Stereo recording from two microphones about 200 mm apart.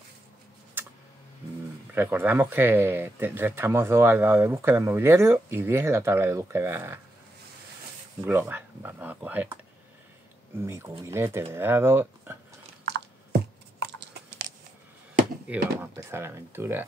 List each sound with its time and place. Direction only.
0.8 s a sound: 10° right (ahead or behind)
2.0 s speech: 10° right (ahead or behind)
8.3 s speech: 10° right (ahead or behind)
10.6 s speech: 15° right (ahead or behind)
12.8 s computer keyboard: 55° right (ahead or behind)
13.8 s chewing: 55° right (ahead or behind)
15.8 s speech: 10° right (ahead or behind)